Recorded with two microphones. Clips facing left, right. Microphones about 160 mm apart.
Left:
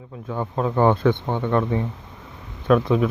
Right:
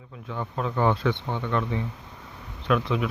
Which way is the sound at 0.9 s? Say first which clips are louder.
Left 6 dB; 50° left (ahead or behind).